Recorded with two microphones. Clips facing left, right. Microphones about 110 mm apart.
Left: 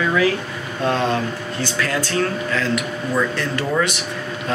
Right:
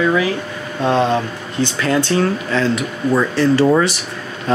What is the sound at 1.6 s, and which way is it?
Speech, 25° right (ahead or behind).